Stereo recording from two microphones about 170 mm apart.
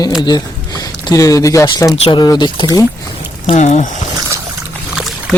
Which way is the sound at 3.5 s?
45° left (ahead or behind).